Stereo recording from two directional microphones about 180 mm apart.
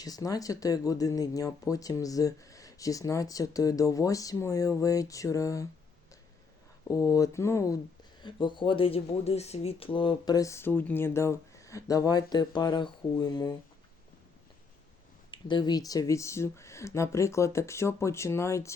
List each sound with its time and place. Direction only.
0.0 s speech: 20° left (ahead or behind)
6.8 s speech: 20° left (ahead or behind)
15.3 s speech: 25° left (ahead or behind)